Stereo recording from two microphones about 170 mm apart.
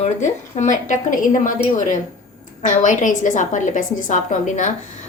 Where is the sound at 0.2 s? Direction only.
45° left (ahead or behind).